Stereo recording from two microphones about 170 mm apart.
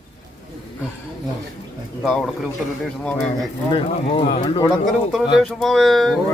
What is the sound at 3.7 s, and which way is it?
Speech, 30° left (ahead or behind).